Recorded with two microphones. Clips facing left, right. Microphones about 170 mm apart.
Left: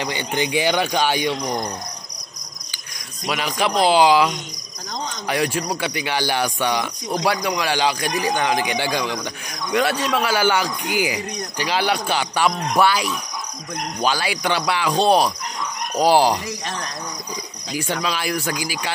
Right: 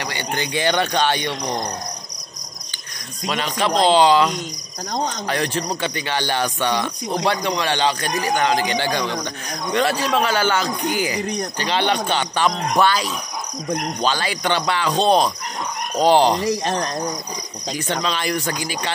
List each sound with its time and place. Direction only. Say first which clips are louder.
0.0 s speech: left 2 dB; 15° left (ahead or behind)
3.3 s speech: right 1 dB; 10° left (ahead or behind)
16.4 s speech: right 8 dB; 30° right (ahead or behind)
18.0 s speech: right 1 dB; 5° left (ahead or behind)